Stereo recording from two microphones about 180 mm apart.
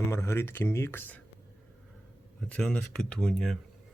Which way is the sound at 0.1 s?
15° left (ahead or behind).